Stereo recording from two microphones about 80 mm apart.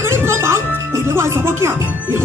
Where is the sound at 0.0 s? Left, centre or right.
Right.